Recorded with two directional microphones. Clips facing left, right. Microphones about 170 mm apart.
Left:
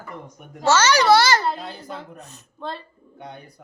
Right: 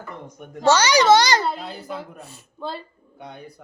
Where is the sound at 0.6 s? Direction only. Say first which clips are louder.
Right 1 dB; 15° right (ahead or behind).